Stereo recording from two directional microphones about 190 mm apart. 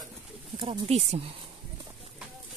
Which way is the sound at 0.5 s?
30° right (ahead or behind).